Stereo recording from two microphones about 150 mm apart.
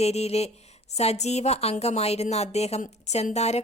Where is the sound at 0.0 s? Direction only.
45° left (ahead or behind).